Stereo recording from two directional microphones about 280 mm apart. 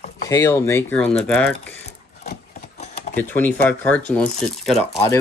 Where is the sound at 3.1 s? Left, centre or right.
Centre.